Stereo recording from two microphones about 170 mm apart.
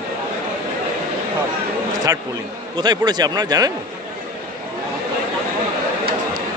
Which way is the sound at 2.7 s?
25° right (ahead or behind).